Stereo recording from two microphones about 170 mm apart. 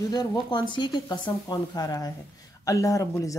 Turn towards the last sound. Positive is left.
turn(degrees=20)  # may be behind; listen again after turning